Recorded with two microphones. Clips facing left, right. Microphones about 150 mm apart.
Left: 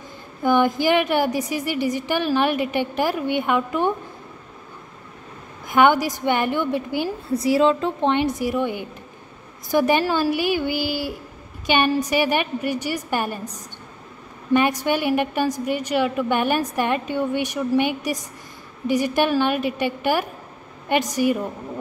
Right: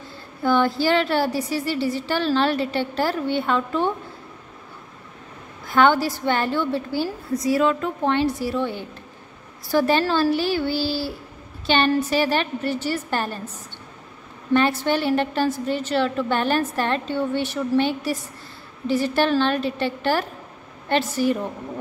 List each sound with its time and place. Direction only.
0.4 s a woman's voice: 15° left (ahead or behind)
5.7 s a woman's voice: 15° left (ahead or behind)
7.3 s a woman's voice: 25° left (ahead or behind)
14.5 s a woman's voice: 15° left (ahead or behind)